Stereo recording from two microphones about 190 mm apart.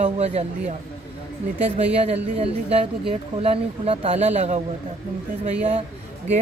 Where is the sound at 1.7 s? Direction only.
30° right (ahead or behind).